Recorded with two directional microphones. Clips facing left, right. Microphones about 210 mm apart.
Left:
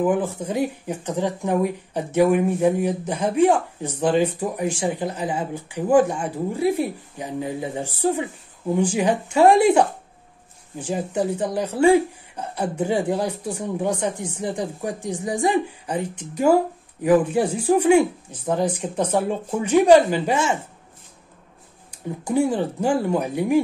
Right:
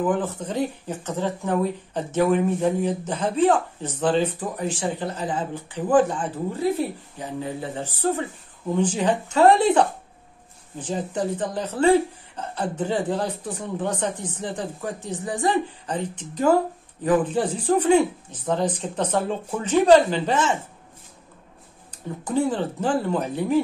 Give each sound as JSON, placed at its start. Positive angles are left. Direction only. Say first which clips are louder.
{"t": 0.0, "sound": "speech", "louder": "left 3 dB", "side_deg": 10}
{"t": 22.2, "sound": "speech", "louder": "left 2 dB", "side_deg": 10}